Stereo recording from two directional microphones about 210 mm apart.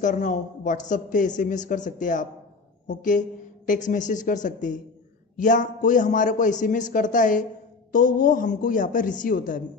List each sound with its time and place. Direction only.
0.0 s speech: 35° left (ahead or behind)